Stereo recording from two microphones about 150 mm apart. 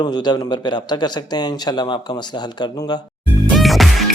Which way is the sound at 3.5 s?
Centre (ahead or behind).